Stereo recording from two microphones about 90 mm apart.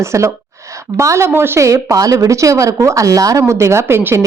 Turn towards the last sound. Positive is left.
turn(degrees=-30)  # may be behind; listen again after turning